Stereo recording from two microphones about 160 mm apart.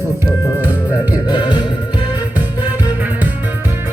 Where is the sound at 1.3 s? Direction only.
30° left (ahead or behind).